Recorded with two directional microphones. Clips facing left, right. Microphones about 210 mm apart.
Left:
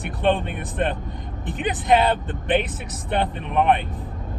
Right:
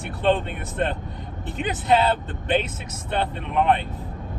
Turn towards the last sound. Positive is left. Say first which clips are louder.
# left 1 dB
turn(degrees=15)  # may be behind; listen again after turning